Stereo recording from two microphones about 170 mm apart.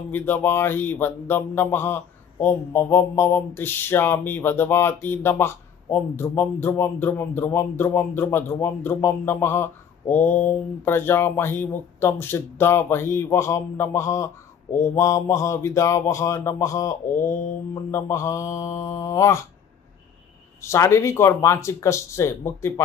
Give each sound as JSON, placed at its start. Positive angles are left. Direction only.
{"t": 0.1, "sound": "speech", "side_deg": 10}
{"t": 20.6, "sound": "speech", "side_deg": 15}